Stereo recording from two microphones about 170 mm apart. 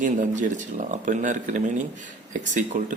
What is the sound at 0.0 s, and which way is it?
Speech, 45° right (ahead or behind).